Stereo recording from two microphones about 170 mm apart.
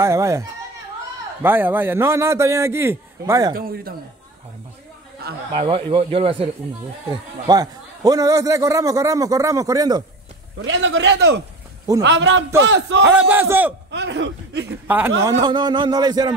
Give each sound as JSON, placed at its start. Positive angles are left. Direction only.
{"t": 0.0, "sound": "a man's voice", "side_deg": -15}
{"t": 3.5, "sound": "speech", "side_deg": -60}
{"t": 5.5, "sound": "speech", "side_deg": -30}
{"t": 7.4, "sound": "a man's voice", "side_deg": -20}
{"t": 10.7, "sound": "a man's voice", "side_deg": -90}
{"t": 13.0, "sound": "a man's voice", "side_deg": -10}
{"t": 13.8, "sound": "speech", "side_deg": -90}
{"t": 14.9, "sound": "a man's voice", "side_deg": -10}
{"t": 15.2, "sound": "a man's voice", "side_deg": -25}